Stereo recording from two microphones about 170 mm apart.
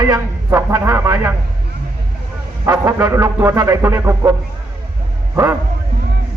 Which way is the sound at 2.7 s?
20° right (ahead or behind).